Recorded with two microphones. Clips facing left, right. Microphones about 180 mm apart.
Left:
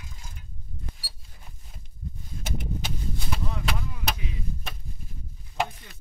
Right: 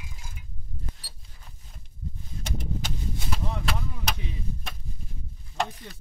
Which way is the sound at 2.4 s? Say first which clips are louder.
Even; 5° left (ahead or behind).